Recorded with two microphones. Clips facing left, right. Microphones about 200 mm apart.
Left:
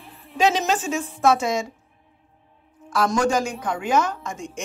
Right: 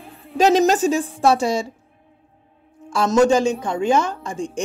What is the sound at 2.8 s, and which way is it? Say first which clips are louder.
Speech: right 6 dB; 25° right (ahead or behind).